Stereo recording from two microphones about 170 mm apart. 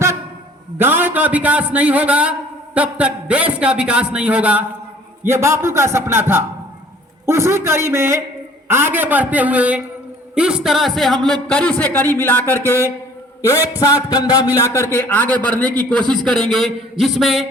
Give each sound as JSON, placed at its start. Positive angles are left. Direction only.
{"t": 0.8, "sound": "a man's voice", "side_deg": -10}
{"t": 13.4, "sound": "music", "side_deg": 15}
{"t": 14.6, "sound": "a man's voice", "side_deg": 15}